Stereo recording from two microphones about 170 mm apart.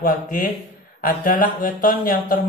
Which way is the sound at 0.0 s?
50° left (ahead or behind).